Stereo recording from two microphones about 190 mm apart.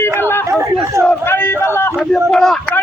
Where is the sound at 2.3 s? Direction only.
5° left (ahead or behind).